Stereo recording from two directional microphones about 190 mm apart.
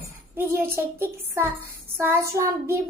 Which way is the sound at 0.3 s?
10° right (ahead or behind).